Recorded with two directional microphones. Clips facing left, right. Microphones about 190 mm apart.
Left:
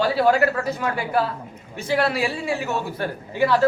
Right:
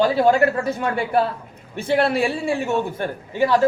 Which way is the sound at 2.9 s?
20° right (ahead or behind).